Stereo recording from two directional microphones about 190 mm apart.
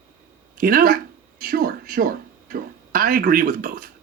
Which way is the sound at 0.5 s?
50° right (ahead or behind).